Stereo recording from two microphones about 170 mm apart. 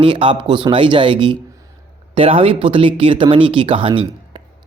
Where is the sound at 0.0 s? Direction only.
30° right (ahead or behind).